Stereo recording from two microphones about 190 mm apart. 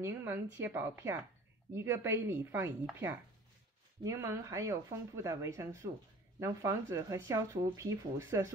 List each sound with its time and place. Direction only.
0.0 s speech: 15° right (ahead or behind)